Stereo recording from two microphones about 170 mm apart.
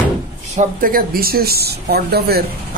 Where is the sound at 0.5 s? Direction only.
50° right (ahead or behind).